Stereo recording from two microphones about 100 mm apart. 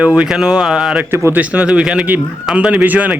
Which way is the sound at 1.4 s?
15° right (ahead or behind).